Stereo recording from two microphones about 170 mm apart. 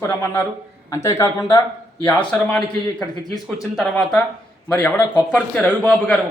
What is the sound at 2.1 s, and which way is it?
Speech, 10° left (ahead or behind).